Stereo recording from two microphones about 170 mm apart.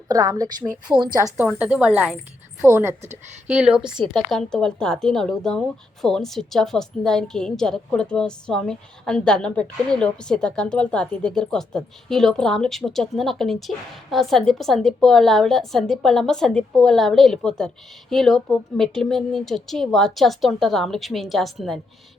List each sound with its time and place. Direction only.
0.1 s a woman's voice: 20° right (ahead or behind)
1.5 s speech: 10° right (ahead or behind)
3.8 s a woman's voice: 25° right (ahead or behind)
4.1 s speech: 5° left (ahead or behind)